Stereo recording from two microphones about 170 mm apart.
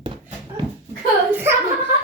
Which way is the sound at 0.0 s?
30° right (ahead or behind).